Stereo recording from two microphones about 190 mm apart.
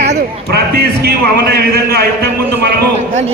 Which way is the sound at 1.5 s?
55° right (ahead or behind).